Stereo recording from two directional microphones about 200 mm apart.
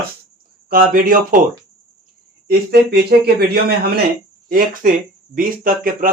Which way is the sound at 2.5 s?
50° right (ahead or behind).